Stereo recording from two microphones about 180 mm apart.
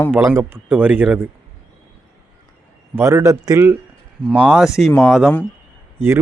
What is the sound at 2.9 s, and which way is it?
Speech, 15° right (ahead or behind).